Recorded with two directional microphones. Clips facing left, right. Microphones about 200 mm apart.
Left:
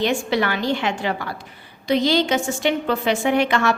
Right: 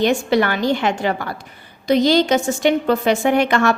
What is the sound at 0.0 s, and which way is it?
A woman's voice, 45° right (ahead or behind).